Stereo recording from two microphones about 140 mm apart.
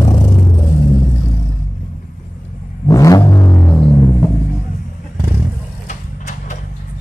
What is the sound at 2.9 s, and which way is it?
Vehicle, 25° left (ahead or behind).